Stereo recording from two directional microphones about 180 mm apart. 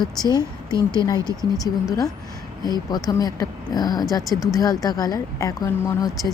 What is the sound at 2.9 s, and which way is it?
A woman's voice, 20° left (ahead or behind).